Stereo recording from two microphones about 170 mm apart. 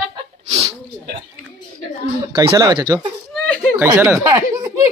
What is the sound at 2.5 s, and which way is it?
Speech, 25° right (ahead or behind).